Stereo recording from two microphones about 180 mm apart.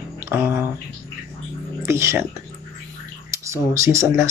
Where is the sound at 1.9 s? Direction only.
15° right (ahead or behind).